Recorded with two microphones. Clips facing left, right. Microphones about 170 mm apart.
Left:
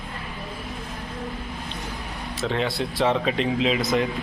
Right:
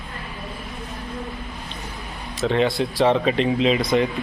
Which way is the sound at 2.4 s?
Centre (ahead or behind).